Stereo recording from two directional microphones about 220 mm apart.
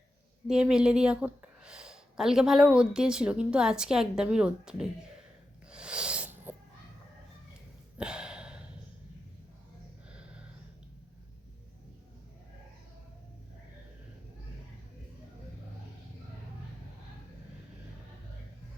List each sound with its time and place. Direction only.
0.4 s speech: 5° right (ahead or behind)
5.7 s sneeze: 5° right (ahead or behind)
7.9 s gasp: 5° right (ahead or behind)
10.1 s a sound: 5° right (ahead or behind)